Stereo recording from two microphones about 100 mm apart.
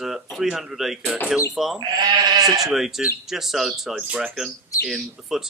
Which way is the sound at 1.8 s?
45° right (ahead or behind).